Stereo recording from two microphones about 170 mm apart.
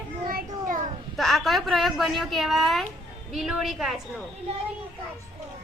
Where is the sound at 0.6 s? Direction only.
50° right (ahead or behind).